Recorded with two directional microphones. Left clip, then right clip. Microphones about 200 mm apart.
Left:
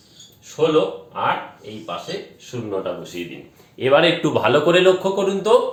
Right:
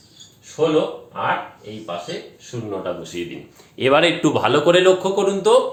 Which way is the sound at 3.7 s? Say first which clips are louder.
Even; 40° right (ahead or behind).